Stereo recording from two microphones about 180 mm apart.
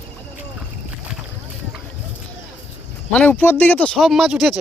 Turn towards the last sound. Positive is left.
turn(degrees=0)  # may be behind; listen again after turning